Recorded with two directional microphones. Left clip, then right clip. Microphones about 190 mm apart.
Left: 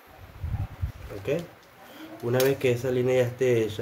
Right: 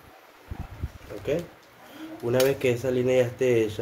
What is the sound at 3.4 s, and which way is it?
Speech, 90° left.